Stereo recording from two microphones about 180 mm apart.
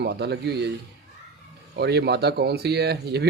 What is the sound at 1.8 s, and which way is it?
Speech, 65° right (ahead or behind).